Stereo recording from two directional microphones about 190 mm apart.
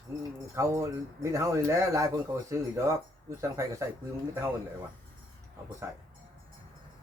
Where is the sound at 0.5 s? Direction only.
15° right (ahead or behind).